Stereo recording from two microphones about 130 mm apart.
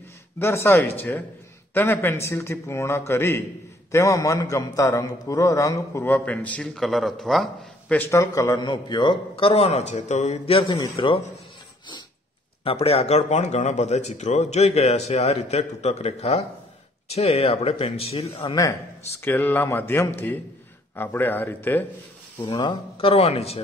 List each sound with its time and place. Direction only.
0.4 s a man's voice: 20° left (ahead or behind)
6.1 s a man's voice: 10° left (ahead or behind)
8.1 s a man's voice: 25° left (ahead or behind)
12.6 s a man's voice: 50° left (ahead or behind)
18.5 s a man's voice: 25° left (ahead or behind)
19.1 s speech: 15° left (ahead or behind)
22.4 s speech: 35° left (ahead or behind)
22.9 s a man's voice: 50° left (ahead or behind)